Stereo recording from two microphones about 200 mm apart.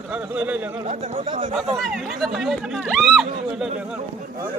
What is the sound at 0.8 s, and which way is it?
Speech, 35° right (ahead or behind).